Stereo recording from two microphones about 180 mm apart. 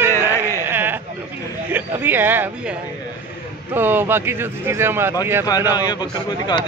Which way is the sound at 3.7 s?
10° right (ahead or behind).